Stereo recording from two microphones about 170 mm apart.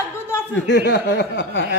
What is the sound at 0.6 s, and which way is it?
A man's voice, 90° left.